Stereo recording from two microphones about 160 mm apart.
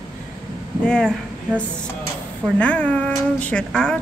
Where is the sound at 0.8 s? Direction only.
5° left (ahead or behind).